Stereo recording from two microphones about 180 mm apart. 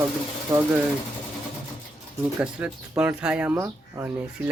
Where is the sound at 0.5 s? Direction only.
25° right (ahead or behind).